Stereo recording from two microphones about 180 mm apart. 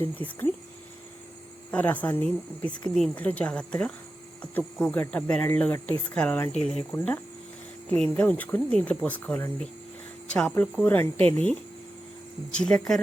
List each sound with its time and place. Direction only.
0.2 s speech: 30° right (ahead or behind)
1.7 s speech: 10° left (ahead or behind)